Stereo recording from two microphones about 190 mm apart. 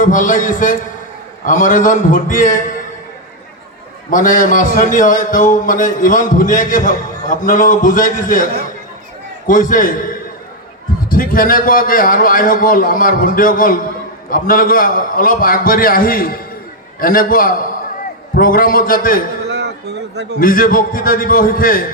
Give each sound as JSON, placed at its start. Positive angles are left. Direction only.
{"t": 0.0, "sound": "a man's voice", "side_deg": 45}
{"t": 4.1, "sound": "a man's voice", "side_deg": 45}
{"t": 9.5, "sound": "a man's voice", "side_deg": 45}
{"t": 19.5, "sound": "a sound", "side_deg": -60}
{"t": 20.4, "sound": "a man's voice", "side_deg": 50}